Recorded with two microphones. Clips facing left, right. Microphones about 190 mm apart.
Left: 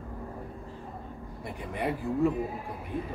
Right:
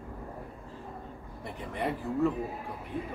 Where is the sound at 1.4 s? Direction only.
15° left (ahead or behind).